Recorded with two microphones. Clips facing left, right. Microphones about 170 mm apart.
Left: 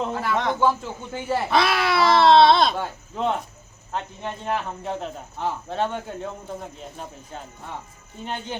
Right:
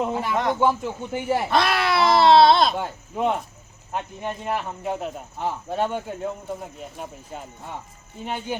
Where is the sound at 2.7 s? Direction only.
10° right (ahead or behind).